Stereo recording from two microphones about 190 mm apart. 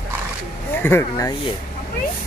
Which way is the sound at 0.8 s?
15° left (ahead or behind).